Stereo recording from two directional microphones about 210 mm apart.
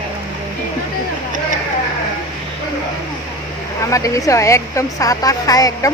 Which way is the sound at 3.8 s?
15° left (ahead or behind).